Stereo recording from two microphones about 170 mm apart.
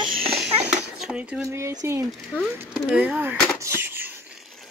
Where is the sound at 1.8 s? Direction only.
15° right (ahead or behind).